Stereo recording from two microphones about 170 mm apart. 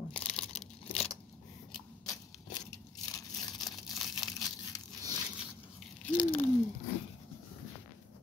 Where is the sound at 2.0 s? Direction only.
20° left (ahead or behind).